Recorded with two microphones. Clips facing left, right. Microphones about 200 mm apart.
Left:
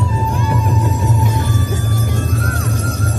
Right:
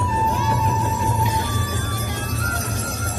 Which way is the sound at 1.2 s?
50° left (ahead or behind).